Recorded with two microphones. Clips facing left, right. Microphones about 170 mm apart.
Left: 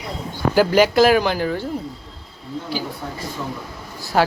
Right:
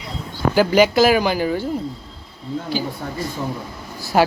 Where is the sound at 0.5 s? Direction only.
Centre (ahead or behind).